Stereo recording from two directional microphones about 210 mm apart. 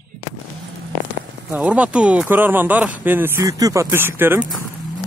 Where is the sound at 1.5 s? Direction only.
5° right (ahead or behind).